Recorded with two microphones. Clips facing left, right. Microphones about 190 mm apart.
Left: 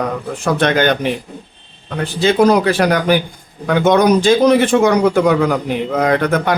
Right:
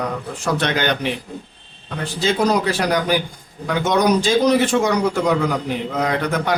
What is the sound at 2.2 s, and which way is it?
A man's voice, 60° left (ahead or behind).